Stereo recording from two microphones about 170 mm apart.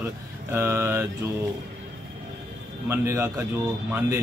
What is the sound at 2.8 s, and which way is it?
Speech, 15° right (ahead or behind).